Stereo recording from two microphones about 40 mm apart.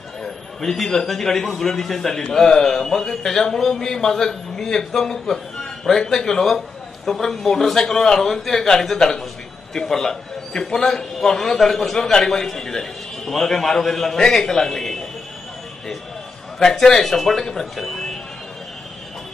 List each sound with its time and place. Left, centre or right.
0.6 s a man's voice: centre
16.5 s a man's voice: centre